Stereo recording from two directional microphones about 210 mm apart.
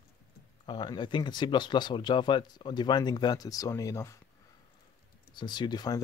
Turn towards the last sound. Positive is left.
turn(degrees=20)  # may be behind; listen again after turning